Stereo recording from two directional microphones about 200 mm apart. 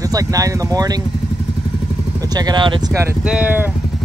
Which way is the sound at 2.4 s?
20° right (ahead or behind).